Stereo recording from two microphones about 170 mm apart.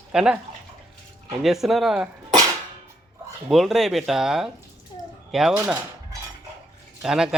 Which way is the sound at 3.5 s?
Centre (ahead or behind).